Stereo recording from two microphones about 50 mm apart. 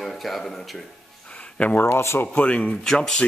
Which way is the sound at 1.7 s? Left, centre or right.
Left.